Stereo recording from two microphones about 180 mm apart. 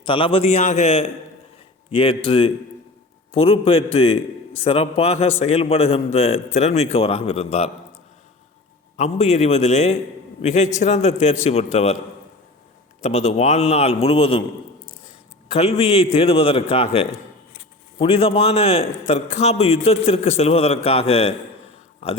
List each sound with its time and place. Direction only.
0.0 s a man's voice: 30° left (ahead or behind)
9.0 s a man's voice: 40° left (ahead or behind)
13.0 s a man's voice: 40° left (ahead or behind)
15.0 s a sound: 35° left (ahead or behind)
16.1 s a man's voice: 35° left (ahead or behind)